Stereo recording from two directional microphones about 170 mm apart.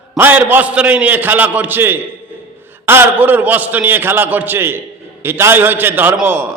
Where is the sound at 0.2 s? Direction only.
10° right (ahead or behind).